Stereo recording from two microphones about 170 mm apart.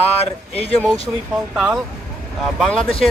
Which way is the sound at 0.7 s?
Centre (ahead or behind).